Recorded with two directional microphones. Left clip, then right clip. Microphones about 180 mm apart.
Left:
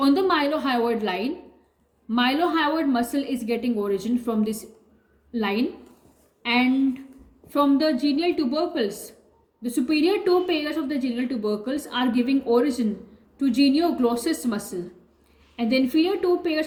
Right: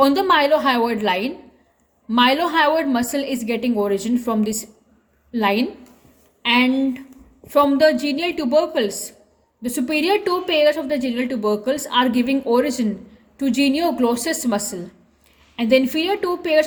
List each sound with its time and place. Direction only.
0.0 s a woman's voice: 50° right (ahead or behind)